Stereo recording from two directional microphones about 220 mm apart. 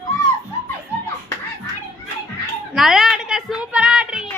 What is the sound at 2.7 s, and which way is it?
A woman's voice, centre (ahead or behind).